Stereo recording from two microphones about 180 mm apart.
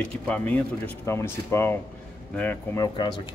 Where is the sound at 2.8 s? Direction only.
25° left (ahead or behind).